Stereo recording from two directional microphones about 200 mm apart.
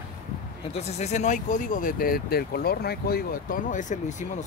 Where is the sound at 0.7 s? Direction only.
35° left (ahead or behind).